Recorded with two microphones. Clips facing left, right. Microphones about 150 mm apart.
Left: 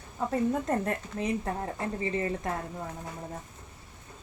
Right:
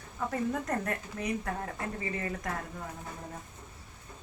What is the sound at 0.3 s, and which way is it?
A woman's voice, 25° left (ahead or behind).